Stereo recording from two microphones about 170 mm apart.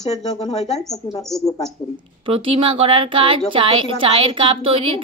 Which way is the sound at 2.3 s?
30° right (ahead or behind).